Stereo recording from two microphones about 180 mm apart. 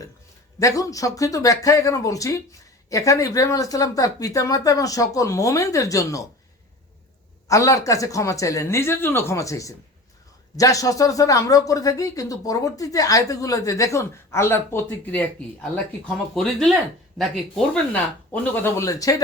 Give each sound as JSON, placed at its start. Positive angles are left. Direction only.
{"t": 0.6, "sound": "speech", "side_deg": 20}
{"t": 7.4, "sound": "speech", "side_deg": 20}